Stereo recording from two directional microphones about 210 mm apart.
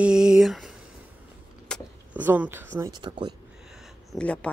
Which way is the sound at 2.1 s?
10° right (ahead or behind).